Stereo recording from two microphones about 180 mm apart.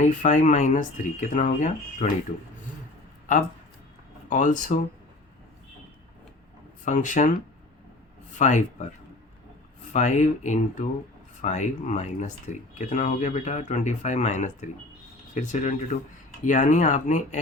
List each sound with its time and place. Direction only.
0.0 s speech: 45° left (ahead or behind)
4.3 s speech: 45° left (ahead or behind)
6.8 s speech: 45° left (ahead or behind)
8.4 s speech: 40° left (ahead or behind)
9.9 s speech: 40° left (ahead or behind)